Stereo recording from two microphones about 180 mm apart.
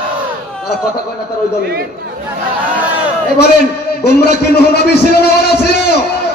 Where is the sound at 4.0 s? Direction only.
65° left (ahead or behind).